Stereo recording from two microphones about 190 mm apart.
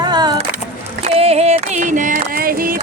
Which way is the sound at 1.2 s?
35° right (ahead or behind).